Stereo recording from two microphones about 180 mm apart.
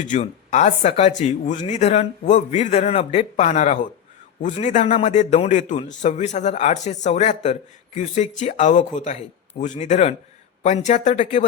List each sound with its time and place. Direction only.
0.0 s a man's voice: 40° left (ahead or behind)